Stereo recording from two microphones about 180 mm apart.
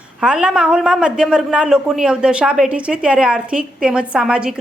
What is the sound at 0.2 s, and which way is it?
A woman's voice, 5° right (ahead or behind).